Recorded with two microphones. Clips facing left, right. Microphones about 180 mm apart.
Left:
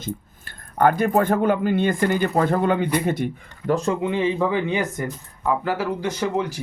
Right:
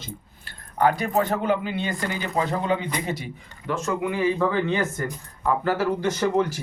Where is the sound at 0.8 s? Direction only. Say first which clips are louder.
Left 3 dB; 50° left (ahead or behind).